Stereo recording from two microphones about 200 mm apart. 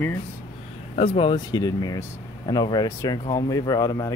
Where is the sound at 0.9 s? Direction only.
30° left (ahead or behind).